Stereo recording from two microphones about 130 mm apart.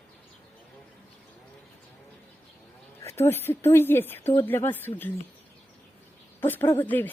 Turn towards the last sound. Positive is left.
turn(degrees=15)  # may be behind; listen again after turning